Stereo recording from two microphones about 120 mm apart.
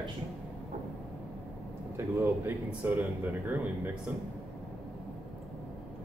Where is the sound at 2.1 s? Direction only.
20° right (ahead or behind).